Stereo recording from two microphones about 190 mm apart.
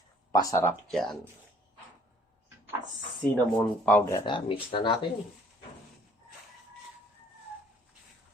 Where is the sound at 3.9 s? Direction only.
15° left (ahead or behind).